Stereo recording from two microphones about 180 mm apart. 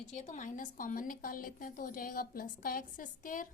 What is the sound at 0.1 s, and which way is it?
A woman's voice, 40° left (ahead or behind).